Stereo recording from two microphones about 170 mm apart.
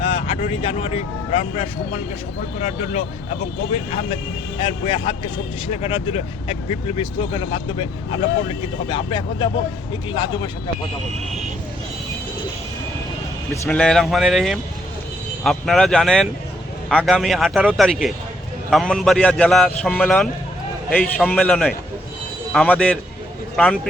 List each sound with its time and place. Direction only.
0.0 s vehicle: 35° left (ahead or behind)
0.6 s speech: 35° left (ahead or behind)
2.6 s speech: 45° left (ahead or behind)
4.6 s speech: 30° left (ahead or behind)
13.5 s a man's voice: 5° left (ahead or behind)